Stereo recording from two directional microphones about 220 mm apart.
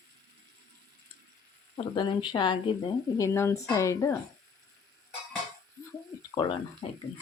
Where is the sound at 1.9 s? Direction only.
20° left (ahead or behind).